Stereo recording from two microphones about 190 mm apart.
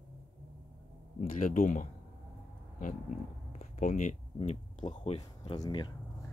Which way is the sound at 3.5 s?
40° left (ahead or behind).